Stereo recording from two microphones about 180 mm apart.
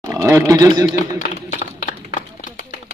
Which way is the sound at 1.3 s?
40° left (ahead or behind).